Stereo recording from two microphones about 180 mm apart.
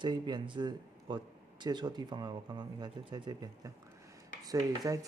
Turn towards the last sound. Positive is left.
turn(degrees=-20)  # may be behind; listen again after turning